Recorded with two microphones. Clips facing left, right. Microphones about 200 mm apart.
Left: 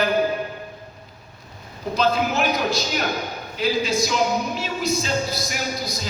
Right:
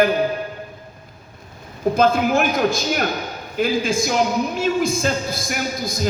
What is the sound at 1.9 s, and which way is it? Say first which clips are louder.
A man's voice: right 3 dB; 50° right (ahead or behind).